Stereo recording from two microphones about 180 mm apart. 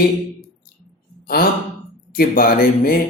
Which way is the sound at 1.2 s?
55° left (ahead or behind).